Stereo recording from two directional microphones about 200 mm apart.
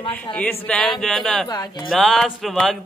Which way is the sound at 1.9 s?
Centre (ahead or behind).